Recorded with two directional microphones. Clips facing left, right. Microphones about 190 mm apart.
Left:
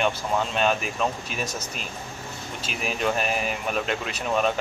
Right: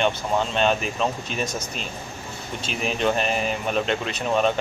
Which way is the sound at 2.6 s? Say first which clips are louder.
Right 3 dB; 5° left (ahead or behind).